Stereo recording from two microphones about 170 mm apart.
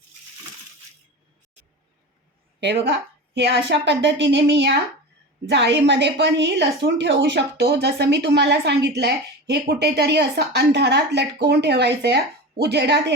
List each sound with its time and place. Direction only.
2.6 s a woman's voice: 90° right